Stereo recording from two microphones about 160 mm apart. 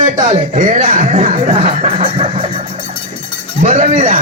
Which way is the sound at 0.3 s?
55° right (ahead or behind).